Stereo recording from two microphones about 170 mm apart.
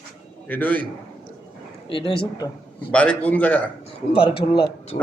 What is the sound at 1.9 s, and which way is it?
Speech, 30° left (ahead or behind).